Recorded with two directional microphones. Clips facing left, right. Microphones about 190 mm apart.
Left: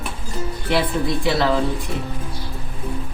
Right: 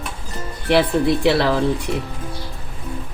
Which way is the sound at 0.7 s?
65° right (ahead or behind).